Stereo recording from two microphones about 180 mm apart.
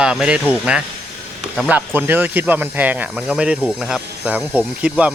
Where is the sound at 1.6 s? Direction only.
10° right (ahead or behind).